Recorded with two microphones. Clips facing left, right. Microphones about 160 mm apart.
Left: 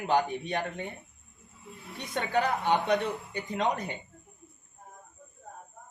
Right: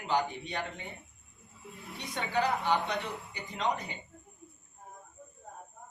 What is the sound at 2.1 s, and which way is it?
Speech, 55° left (ahead or behind).